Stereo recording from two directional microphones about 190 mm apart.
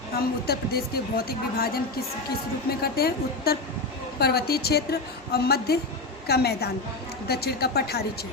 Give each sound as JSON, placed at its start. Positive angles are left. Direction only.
{"t": 0.4, "sound": "a woman's voice", "side_deg": 55}